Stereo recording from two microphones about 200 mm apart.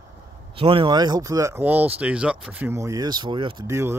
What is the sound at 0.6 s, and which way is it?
Speech, 25° right (ahead or behind).